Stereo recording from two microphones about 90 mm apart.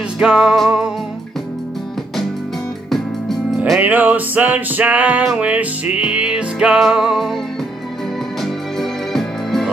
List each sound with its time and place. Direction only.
0.2 s music: 10° right (ahead or behind)
2.9 s music: centre (ahead or behind)
3.8 s music: 20° right (ahead or behind)
8.4 s music: centre (ahead or behind)